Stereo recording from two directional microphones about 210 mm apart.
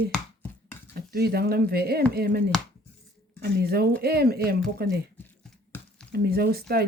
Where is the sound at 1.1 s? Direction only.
45° right (ahead or behind).